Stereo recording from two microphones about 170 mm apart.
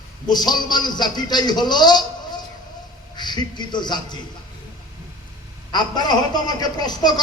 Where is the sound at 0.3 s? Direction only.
25° left (ahead or behind).